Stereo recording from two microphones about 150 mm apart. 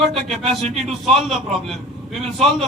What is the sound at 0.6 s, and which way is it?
Speech, 45° right (ahead or behind).